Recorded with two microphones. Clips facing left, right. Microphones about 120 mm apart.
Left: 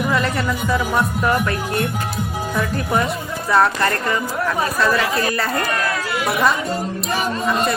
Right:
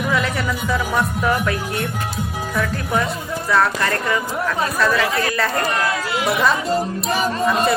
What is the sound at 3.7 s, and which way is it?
Speech, centre (ahead or behind).